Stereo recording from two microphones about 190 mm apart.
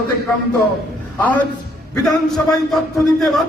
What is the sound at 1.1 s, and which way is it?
A man's voice, 10° left (ahead or behind).